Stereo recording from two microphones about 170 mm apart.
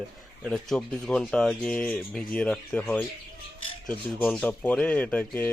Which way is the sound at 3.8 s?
5° left (ahead or behind).